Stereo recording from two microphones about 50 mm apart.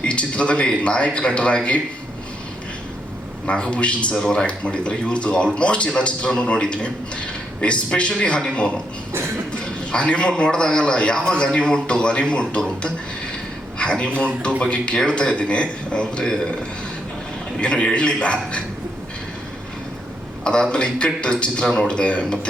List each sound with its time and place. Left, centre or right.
0.0 s a man's voice: left
3.4 s a man's voice: left
4.1 s a man's voice: centre
13.7 s a sound: left
14.9 s a man's voice: centre
17.6 s a man's voice: centre
20.4 s a man's voice: centre